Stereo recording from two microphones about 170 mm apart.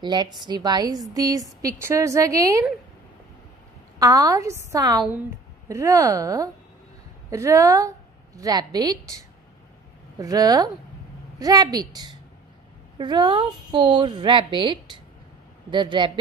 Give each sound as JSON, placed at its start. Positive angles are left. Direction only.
{"t": 0.0, "sound": "speech", "side_deg": -25}
{"t": 4.0, "sound": "speech", "side_deg": -20}
{"t": 10.1, "sound": "speech", "side_deg": -20}